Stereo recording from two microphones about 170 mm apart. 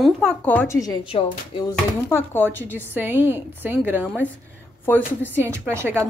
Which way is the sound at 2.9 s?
10° right (ahead or behind).